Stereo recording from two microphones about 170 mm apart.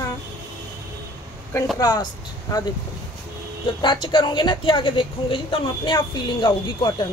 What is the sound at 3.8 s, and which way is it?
A woman's voice, 30° left (ahead or behind).